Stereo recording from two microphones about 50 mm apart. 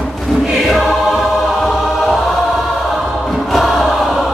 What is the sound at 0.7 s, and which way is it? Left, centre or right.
Choir, centre.